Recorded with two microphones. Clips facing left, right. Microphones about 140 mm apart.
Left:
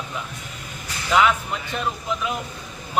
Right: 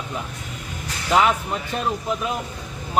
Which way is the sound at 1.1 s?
35° right (ahead or behind).